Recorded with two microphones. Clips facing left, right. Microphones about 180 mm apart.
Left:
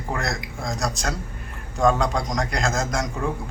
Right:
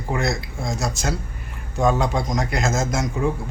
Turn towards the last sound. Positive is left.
turn(degrees=-5)  # may be behind; listen again after turning